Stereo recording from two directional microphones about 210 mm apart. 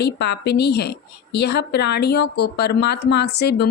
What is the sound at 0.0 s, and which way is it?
A woman's voice, 50° left (ahead or behind).